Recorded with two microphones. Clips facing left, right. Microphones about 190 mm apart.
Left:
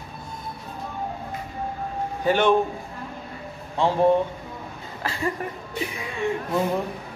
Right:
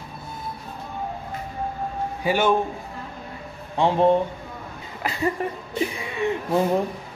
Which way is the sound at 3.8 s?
15° right (ahead or behind).